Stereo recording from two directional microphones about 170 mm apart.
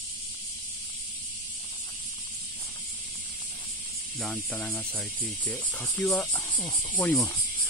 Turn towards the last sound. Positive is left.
turn(degrees=0)  # may be behind; listen again after turning